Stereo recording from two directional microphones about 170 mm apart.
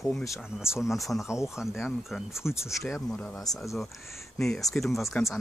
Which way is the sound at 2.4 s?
15° left (ahead or behind).